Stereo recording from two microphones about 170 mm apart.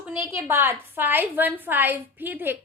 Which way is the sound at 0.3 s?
10° right (ahead or behind).